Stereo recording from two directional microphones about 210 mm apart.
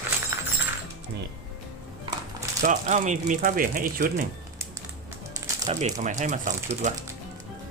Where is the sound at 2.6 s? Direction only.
35° right (ahead or behind).